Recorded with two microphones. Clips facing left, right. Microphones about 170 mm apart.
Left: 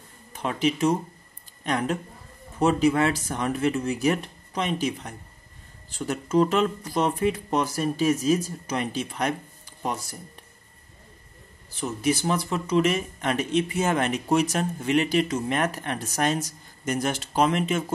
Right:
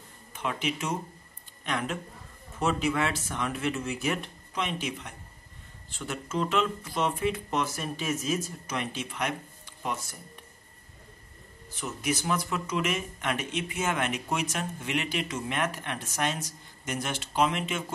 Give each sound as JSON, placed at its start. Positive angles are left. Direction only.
{"t": 0.3, "sound": "speech", "side_deg": 35}
{"t": 11.7, "sound": "speech", "side_deg": 30}